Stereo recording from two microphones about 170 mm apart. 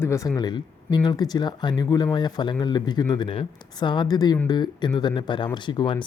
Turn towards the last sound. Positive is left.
turn(degrees=30)  # may be behind; listen again after turning